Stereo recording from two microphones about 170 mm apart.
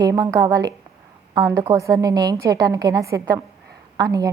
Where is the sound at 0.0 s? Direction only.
20° right (ahead or behind).